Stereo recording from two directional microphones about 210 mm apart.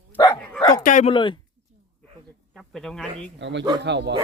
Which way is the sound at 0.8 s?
35° left (ahead or behind).